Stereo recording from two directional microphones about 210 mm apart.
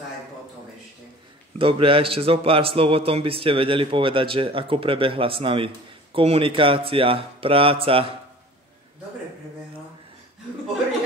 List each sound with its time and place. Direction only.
1.6 s speech: 25° right (ahead or behind)